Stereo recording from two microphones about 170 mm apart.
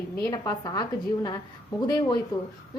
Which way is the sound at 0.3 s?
20° left (ahead or behind).